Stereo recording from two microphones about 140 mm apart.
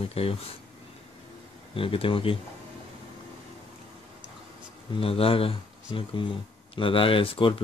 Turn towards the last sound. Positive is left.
turn(degrees=40)  # may be behind; listen again after turning